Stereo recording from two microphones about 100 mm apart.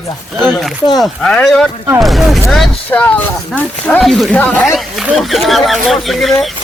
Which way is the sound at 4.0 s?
Centre (ahead or behind).